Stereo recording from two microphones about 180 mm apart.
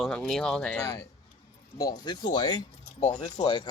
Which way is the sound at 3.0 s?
40° left (ahead or behind).